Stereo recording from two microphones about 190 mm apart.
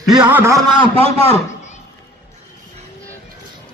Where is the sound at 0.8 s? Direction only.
30° right (ahead or behind).